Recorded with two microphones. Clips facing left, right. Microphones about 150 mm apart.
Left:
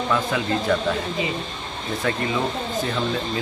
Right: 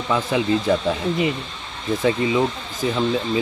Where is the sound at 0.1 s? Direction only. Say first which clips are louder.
Right 5 dB; 20° right (ahead or behind).